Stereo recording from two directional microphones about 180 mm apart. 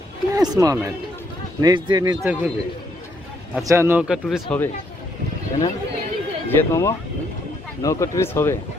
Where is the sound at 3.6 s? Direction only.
15° right (ahead or behind); by 4.6 s 5° left (ahead or behind).